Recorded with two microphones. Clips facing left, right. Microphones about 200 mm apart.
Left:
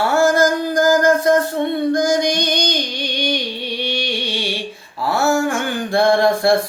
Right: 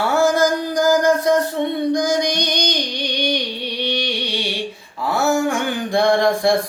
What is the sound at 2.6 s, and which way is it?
Music, 15° right (ahead or behind).